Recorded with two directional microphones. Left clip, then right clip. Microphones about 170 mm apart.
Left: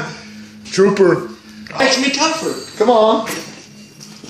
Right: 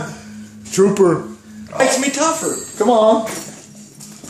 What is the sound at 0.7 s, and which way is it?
Speech, 25° right (ahead or behind).